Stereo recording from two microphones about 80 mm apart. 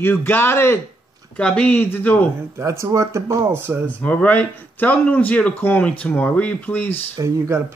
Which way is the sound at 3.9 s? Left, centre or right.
Centre.